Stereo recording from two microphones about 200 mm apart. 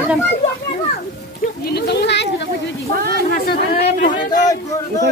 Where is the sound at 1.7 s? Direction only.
55° left (ahead or behind).